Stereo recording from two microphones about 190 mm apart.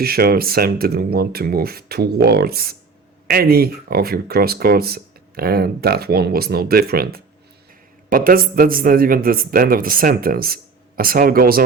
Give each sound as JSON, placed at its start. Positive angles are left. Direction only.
{"t": 0.0, "sound": "speech", "side_deg": -55}